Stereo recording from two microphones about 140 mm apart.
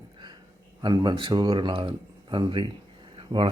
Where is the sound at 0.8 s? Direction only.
30° right (ahead or behind).